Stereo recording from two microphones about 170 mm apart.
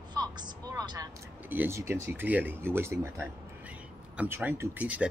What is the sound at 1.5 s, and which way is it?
Speech, 15° right (ahead or behind).